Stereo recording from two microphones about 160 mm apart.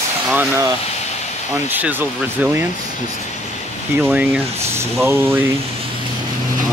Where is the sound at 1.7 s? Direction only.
10° right (ahead or behind).